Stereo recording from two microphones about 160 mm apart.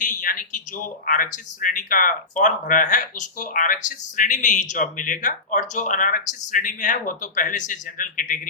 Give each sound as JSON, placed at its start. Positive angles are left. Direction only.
{"t": 0.0, "sound": "speech", "side_deg": 55}